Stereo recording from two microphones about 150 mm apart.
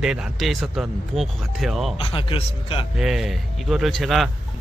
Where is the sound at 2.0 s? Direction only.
35° left (ahead or behind).